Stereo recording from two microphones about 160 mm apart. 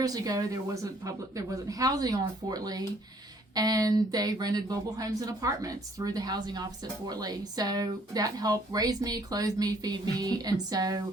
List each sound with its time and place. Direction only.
0.0 s speech: 25° right (ahead or behind)